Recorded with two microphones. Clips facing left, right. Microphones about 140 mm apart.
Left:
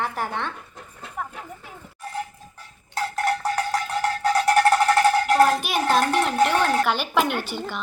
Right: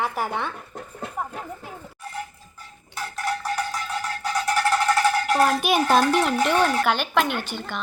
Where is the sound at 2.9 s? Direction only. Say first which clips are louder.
Left 5 dB; 60° left (ahead or behind).